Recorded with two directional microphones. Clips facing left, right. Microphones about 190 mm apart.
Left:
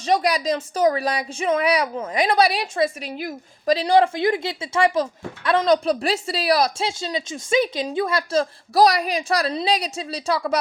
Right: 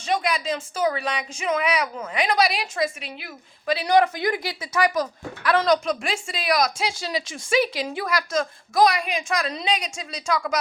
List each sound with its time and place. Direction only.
0.0 s speech: 40° left (ahead or behind)